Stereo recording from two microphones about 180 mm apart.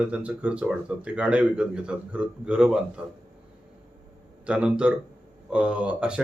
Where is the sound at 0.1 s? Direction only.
5° right (ahead or behind).